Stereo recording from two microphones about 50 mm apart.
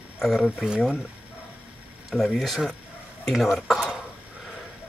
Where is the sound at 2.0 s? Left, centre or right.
Centre.